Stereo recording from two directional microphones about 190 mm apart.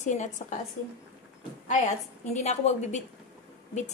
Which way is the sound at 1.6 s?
40° left (ahead or behind).